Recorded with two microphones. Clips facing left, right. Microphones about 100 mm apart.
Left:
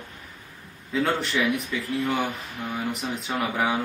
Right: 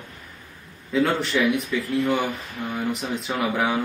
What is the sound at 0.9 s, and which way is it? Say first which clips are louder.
Speech: right 3 dB; centre (ahead or behind).